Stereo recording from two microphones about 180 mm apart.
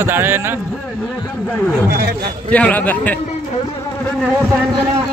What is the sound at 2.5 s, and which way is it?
Speech, 10° left (ahead or behind).